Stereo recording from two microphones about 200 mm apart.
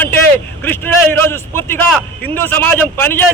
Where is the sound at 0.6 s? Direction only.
10° left (ahead or behind).